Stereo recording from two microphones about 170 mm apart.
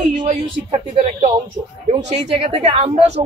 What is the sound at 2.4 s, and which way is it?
Speech, 35° right (ahead or behind).